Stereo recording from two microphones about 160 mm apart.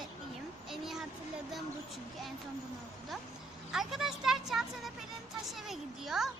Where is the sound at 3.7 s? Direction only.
Centre (ahead or behind).